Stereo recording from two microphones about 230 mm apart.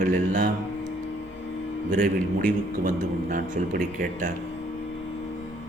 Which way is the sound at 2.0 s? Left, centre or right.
Right.